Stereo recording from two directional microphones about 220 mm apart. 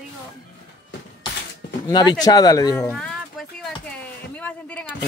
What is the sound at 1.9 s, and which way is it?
Speech, 20° left (ahead or behind).